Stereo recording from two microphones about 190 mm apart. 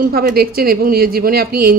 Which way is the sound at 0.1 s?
55° right (ahead or behind).